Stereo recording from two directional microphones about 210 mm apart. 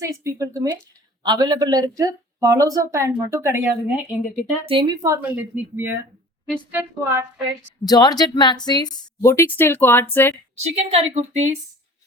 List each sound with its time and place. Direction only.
0.0 s a man's voice: 15° right (ahead or behind)
4.6 s a man's voice: 25° right (ahead or behind)
5.0 s speech: 10° right (ahead or behind)
7.9 s a woman's voice: 20° left (ahead or behind)
10.5 s a woman's voice: 30° right (ahead or behind)